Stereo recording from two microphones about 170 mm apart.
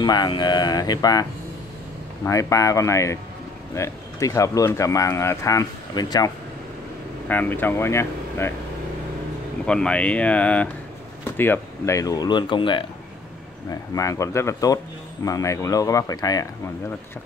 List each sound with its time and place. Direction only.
0.0 s speech: 25° left (ahead or behind)
2.2 s speech: 20° left (ahead or behind)
7.2 s speech: 10° left (ahead or behind)
9.7 s speech: 5° left (ahead or behind); by 12.8 s 30° left (ahead or behind)
13.9 s speech: 20° left (ahead or behind)